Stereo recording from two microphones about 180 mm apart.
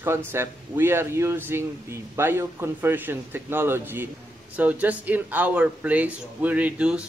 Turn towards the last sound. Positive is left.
turn(degrees=-5)  # may be behind; listen again after turning